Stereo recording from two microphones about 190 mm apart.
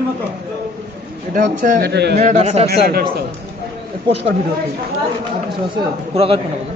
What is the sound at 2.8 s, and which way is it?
Speech, 55° right (ahead or behind).